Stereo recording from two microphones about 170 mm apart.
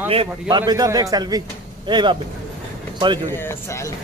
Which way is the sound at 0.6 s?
20° right (ahead or behind).